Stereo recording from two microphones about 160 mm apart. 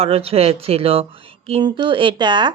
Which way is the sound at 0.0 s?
40° right (ahead or behind).